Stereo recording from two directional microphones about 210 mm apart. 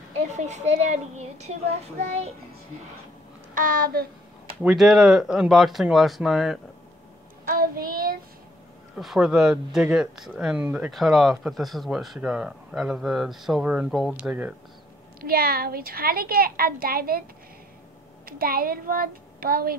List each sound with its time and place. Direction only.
0.4 s a child's voice: 30° right (ahead or behind)
3.5 s a child's voice: 40° right (ahead or behind)
4.6 s speech: centre (ahead or behind)
7.4 s child singing: 45° right (ahead or behind)
8.9 s speech: centre (ahead or behind)
15.1 s a woman's voice: 45° right (ahead or behind)
18.2 s a woman's voice: 45° right (ahead or behind)